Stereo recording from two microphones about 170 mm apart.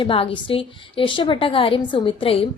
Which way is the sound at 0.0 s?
30° left (ahead or behind).